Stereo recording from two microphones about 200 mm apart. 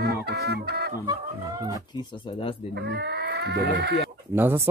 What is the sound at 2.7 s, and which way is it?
Speech, 55° right (ahead or behind).